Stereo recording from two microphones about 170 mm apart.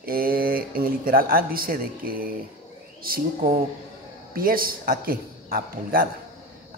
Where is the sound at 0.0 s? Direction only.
60° right (ahead or behind).